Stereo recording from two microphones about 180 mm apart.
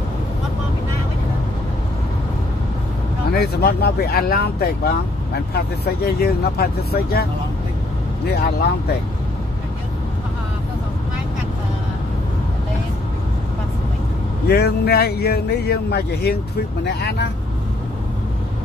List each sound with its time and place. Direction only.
3.3 s speech: 60° left (ahead or behind)
6.0 s speech: 60° left (ahead or behind)
8.3 s speech: 65° left (ahead or behind)
14.5 s speech: 65° left (ahead or behind)